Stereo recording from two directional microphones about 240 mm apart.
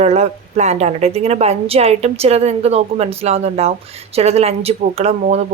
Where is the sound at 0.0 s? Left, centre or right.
Right.